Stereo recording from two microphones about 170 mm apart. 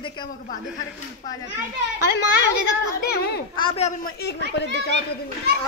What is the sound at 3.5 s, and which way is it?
Speech, 30° left (ahead or behind).